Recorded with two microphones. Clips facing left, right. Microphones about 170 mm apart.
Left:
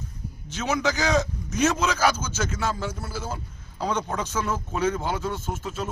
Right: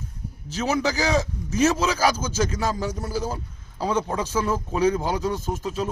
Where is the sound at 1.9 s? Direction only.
10° right (ahead or behind).